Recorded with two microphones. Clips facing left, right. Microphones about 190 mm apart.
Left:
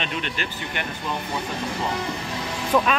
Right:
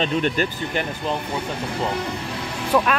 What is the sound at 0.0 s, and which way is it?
Speech, 40° right (ahead or behind).